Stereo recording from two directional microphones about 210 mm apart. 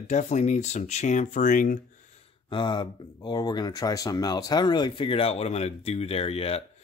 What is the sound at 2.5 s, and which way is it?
Speech, 20° left (ahead or behind).